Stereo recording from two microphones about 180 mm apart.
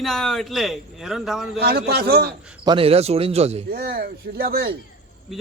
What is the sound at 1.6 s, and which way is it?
Speech, 60° right (ahead or behind).